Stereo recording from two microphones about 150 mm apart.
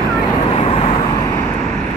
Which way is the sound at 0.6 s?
40° left (ahead or behind).